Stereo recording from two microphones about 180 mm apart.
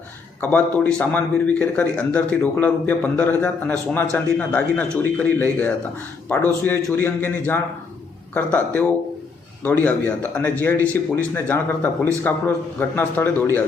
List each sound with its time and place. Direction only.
0.5 s a man's voice: 5° left (ahead or behind)